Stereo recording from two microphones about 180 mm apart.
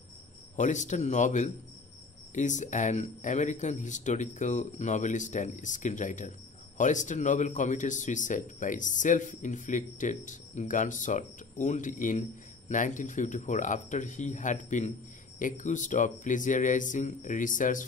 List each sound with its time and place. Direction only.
0.6 s a man's voice: 40° left (ahead or behind)